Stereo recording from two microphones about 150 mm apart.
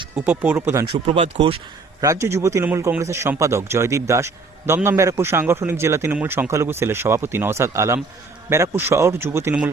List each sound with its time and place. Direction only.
0.3 s a man's voice: 10° right (ahead or behind)
0.9 s speech: 35° right (ahead or behind)
2.0 s a man's voice: 20° right (ahead or behind)